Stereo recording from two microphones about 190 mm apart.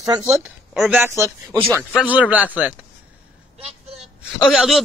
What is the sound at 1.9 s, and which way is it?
Speech, 5° right (ahead or behind).